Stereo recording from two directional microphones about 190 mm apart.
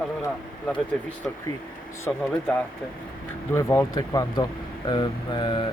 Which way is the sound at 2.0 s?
10° left (ahead or behind).